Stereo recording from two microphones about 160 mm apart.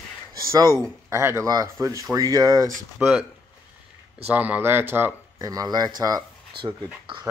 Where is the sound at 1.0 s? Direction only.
15° right (ahead or behind).